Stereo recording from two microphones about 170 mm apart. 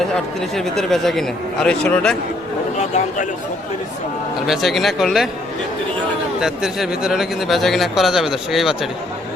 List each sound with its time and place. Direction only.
0.1 s speech: centre (ahead or behind)
2.7 s a man's voice: 40° left (ahead or behind)
4.4 s speech: centre (ahead or behind)
6.4 s speech: 5° right (ahead or behind)